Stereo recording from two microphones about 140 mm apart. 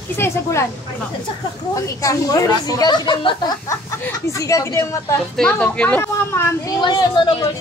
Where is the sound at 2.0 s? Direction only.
25° left (ahead or behind).